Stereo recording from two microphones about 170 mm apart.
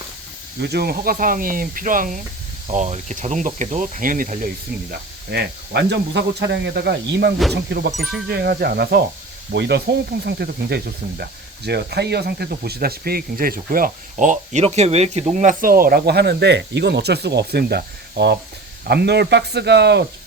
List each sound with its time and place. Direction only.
0.6 s insect: 70° right (ahead or behind)
7.5 s speech: 75° right (ahead or behind)
7.9 s speech: centre (ahead or behind)
8.3 s speech: 75° right (ahead or behind)
9.5 s speech: 80° right